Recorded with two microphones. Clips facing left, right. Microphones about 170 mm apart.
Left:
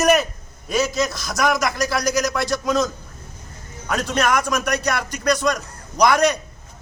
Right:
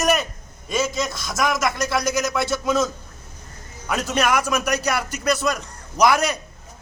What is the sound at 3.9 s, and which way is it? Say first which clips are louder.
Speech: left 1 dB; 5° right (ahead or behind).